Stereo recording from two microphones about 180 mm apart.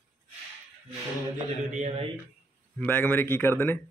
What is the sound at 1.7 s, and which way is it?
Speech, 45° right (ahead or behind).